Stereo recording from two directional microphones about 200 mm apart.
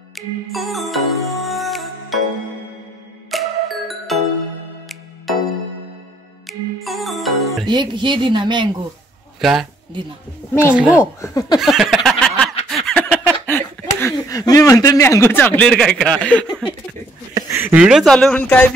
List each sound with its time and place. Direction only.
0.1 s music: centre (ahead or behind)
3.3 s music: centre (ahead or behind)
5.3 s music: centre (ahead or behind)
7.6 s speech: 20° right (ahead or behind)
9.4 s speech: centre (ahead or behind)
10.7 s speech: 5° right (ahead or behind)
11.1 s speech: 15° left (ahead or behind)
11.6 s a sound: centre (ahead or behind)
13.9 s speech: 15° left (ahead or behind)
17.3 s speech: 10° right (ahead or behind); by 18.8 s 5° left (ahead or behind)